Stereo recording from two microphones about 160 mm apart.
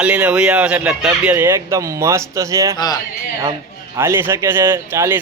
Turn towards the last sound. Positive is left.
turn(degrees=-15)  # may be behind; listen again after turning